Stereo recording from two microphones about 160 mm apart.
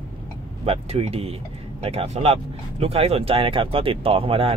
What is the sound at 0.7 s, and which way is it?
Speech, 40° right (ahead or behind).